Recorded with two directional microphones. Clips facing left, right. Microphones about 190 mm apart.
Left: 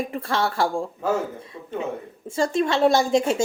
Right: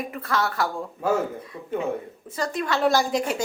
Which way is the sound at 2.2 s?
25° left (ahead or behind).